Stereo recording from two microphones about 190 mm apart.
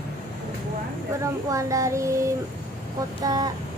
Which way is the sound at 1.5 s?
15° right (ahead or behind).